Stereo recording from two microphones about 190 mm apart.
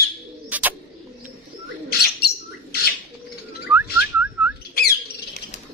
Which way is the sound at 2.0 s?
60° left (ahead or behind).